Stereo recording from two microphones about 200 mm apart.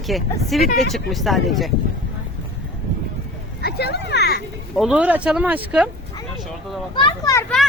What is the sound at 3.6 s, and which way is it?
Speech, 55° left (ahead or behind).